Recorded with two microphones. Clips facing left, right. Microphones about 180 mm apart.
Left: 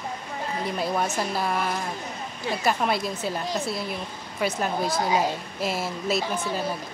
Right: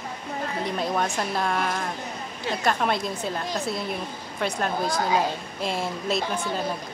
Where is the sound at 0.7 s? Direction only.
5° left (ahead or behind).